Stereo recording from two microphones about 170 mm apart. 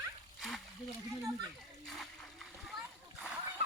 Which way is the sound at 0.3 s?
Centre (ahead or behind).